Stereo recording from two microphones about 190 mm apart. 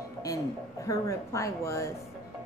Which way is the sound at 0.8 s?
15° left (ahead or behind).